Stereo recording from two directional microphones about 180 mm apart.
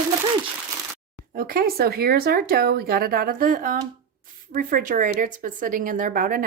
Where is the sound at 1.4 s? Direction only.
55° right (ahead or behind).